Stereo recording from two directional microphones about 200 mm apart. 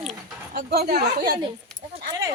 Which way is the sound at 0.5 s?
50° right (ahead or behind).